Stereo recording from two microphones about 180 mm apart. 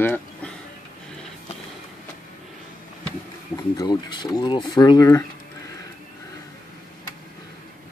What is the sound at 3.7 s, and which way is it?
Speech, 20° left (ahead or behind).